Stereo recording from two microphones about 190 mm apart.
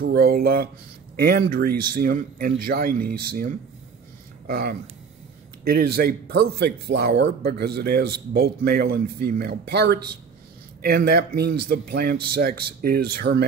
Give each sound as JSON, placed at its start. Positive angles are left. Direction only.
{"t": 0.0, "sound": "speech", "side_deg": -55}